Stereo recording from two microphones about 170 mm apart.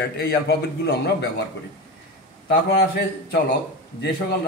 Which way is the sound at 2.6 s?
70° left (ahead or behind).